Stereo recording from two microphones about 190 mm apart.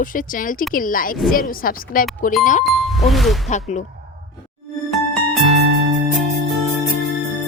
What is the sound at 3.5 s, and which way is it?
Speech, 40° left (ahead or behind).